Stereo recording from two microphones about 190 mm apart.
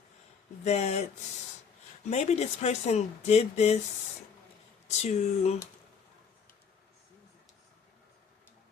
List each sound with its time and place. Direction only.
0.6 s speech: 35° left (ahead or behind)
2.0 s speech: 35° left (ahead or behind)
4.9 s speech: 35° left (ahead or behind)